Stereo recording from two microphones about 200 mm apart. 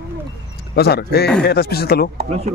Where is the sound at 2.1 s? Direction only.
30° right (ahead or behind).